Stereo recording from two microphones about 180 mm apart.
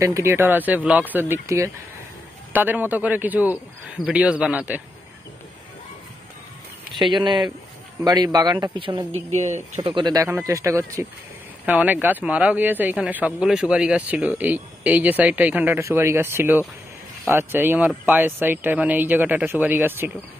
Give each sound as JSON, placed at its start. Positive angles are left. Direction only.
{"t": 0.0, "sound": "speech", "side_deg": -15}
{"t": 7.0, "sound": "speech", "side_deg": -25}
{"t": 9.4, "sound": "speech", "side_deg": -40}